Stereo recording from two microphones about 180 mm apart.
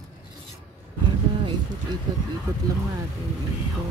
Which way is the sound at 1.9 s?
25° right (ahead or behind).